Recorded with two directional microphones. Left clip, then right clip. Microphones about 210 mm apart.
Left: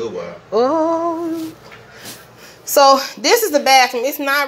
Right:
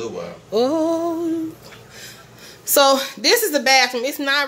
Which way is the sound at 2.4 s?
40° right (ahead or behind).